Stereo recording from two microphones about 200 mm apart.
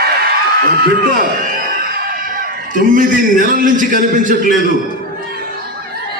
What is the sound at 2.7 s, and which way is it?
A man's voice, 40° right (ahead or behind).